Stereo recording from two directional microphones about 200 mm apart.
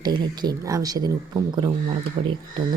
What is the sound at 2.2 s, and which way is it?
Speech, 25° right (ahead or behind).